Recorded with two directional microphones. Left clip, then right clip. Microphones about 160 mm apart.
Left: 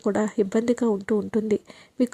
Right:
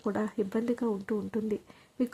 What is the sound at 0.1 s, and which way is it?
Speech, 30° left (ahead or behind).